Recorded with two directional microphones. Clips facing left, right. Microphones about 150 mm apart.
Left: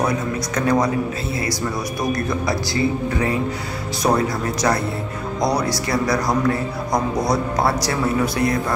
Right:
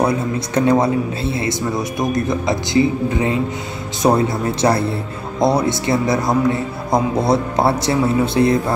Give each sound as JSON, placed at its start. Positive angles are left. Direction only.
{"t": 0.0, "sound": "speech", "side_deg": -30}